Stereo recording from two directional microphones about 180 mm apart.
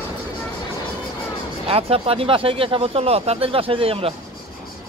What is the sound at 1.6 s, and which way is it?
Speech, 30° right (ahead or behind).